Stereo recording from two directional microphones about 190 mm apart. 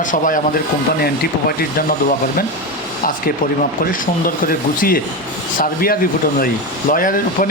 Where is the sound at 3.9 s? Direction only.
45° left (ahead or behind).